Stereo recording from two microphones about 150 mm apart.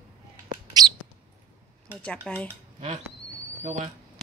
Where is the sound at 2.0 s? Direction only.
10° left (ahead or behind).